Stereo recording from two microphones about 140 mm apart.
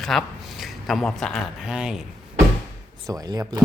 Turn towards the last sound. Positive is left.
turn(degrees=-25)  # may be behind; listen again after turning